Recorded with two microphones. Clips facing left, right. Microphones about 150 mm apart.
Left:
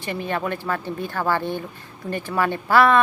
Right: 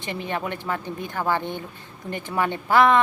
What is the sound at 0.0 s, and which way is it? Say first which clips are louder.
Speech: left 3 dB; 20° right (ahead or behind).